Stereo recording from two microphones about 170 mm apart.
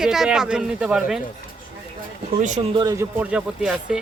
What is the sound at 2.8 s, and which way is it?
Speech, 20° right (ahead or behind).